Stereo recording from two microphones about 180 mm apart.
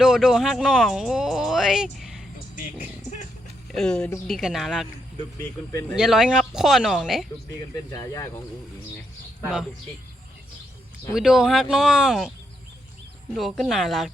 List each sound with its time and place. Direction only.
0.0 s speech: centre (ahead or behind)
3.7 s speech: 5° left (ahead or behind)
5.4 s speech: 10° left (ahead or behind)
6.0 s speech: centre (ahead or behind)
7.9 s speech: 20° left (ahead or behind)
11.1 s speech: 5° right (ahead or behind)
13.3 s speech: centre (ahead or behind)